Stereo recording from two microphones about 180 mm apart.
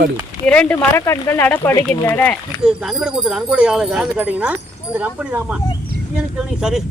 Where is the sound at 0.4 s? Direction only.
5° left (ahead or behind).